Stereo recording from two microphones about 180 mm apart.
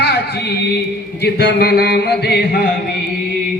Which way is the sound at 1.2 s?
65° left (ahead or behind).